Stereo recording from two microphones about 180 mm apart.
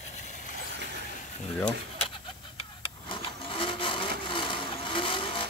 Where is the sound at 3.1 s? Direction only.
30° left (ahead or behind).